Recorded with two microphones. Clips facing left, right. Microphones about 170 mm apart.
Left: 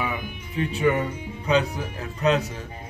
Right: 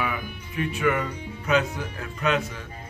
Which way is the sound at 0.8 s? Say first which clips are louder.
Left 3 dB; 20° left (ahead or behind).